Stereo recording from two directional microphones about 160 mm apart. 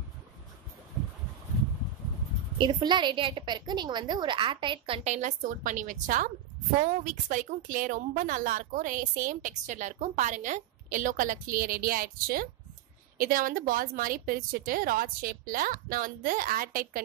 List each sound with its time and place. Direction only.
2.6 s a woman's voice: 30° right (ahead or behind); by 17.0 s 60° right (ahead or behind)